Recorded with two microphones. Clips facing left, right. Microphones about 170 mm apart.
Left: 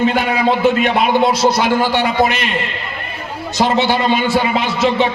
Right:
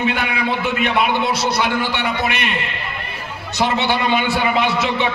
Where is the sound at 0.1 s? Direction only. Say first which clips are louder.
Left 5 dB; 40° left (ahead or behind).